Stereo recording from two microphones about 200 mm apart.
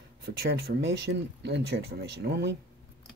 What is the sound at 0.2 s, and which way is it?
Speech, 50° right (ahead or behind).